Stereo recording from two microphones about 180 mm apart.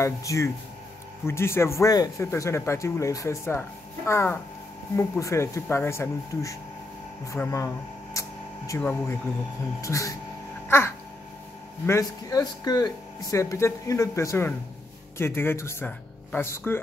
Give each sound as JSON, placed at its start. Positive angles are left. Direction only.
{"t": 0.0, "sound": "speech", "side_deg": 15}